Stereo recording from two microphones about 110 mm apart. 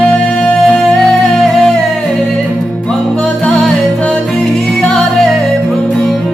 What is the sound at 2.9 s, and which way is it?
Music, 5° left (ahead or behind).